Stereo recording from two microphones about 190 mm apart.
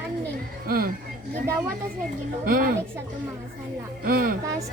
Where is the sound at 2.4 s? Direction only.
50° right (ahead or behind).